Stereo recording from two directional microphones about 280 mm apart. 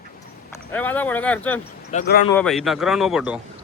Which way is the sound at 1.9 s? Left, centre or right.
Left.